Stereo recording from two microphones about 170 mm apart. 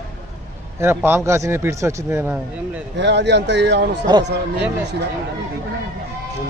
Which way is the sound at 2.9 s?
90° right.